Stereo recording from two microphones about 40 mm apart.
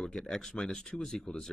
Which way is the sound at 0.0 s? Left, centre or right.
Centre.